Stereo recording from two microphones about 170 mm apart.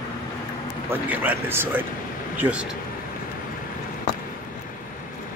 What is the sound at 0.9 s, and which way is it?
Speech, 10° right (ahead or behind).